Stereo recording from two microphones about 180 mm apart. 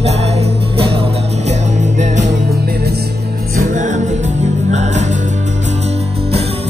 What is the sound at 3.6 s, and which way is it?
Music, 45° right (ahead or behind).